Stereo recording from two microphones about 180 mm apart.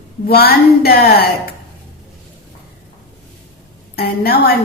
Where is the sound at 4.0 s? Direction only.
60° left (ahead or behind).